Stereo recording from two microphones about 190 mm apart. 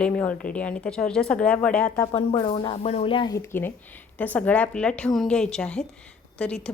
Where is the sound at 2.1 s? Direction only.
30° left (ahead or behind).